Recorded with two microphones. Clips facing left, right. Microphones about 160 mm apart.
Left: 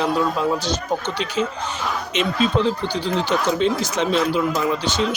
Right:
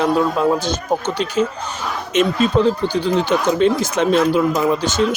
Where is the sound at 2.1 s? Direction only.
45° right (ahead or behind).